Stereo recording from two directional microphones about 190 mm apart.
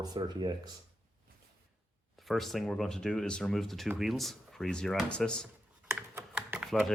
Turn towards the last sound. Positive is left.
turn(degrees=0)  # may be behind; listen again after turning